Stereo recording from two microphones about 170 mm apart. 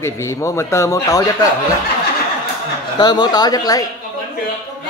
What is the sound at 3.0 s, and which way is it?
Speech, 25° left (ahead or behind).